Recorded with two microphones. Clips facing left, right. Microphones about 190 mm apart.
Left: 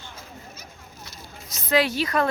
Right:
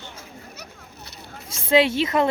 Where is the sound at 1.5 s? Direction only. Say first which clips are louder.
Right 4 dB; 25° right (ahead or behind).